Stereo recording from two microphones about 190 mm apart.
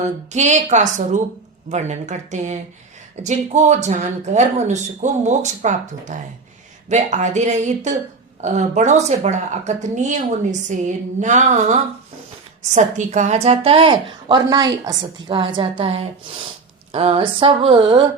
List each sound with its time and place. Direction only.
0.0 s a woman's voice: 35° right (ahead or behind)